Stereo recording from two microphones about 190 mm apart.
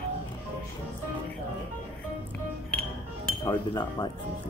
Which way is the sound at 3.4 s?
20° left (ahead or behind).